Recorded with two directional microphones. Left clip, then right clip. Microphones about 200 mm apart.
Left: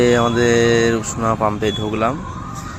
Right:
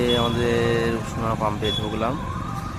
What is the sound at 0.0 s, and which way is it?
Speech, 25° left (ahead or behind).